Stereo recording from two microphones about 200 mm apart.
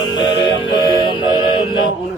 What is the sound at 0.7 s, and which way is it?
Music, 25° left (ahead or behind).